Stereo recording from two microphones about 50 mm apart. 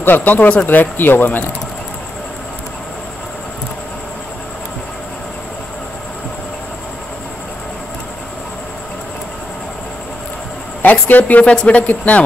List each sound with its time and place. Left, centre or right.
0.0 s speech: left
10.8 s speech: left
11.5 s speech: left